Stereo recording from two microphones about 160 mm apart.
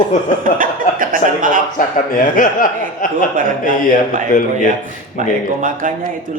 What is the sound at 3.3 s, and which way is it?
Speech, 55° right (ahead or behind).